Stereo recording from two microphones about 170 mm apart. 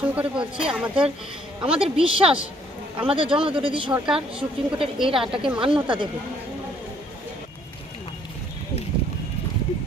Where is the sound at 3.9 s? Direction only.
5° right (ahead or behind).